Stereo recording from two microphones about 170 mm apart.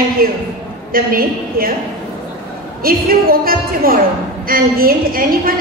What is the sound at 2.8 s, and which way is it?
A woman's voice, 60° right (ahead or behind).